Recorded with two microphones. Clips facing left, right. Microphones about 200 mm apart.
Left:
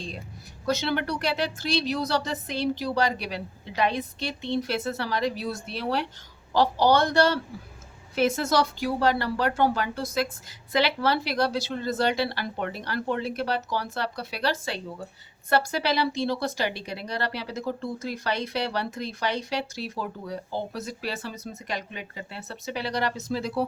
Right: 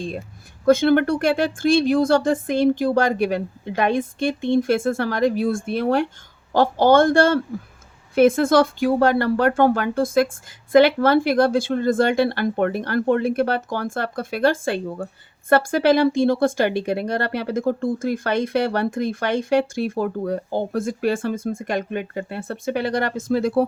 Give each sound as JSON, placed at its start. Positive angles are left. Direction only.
{"t": 0.6, "sound": "speech", "side_deg": -50}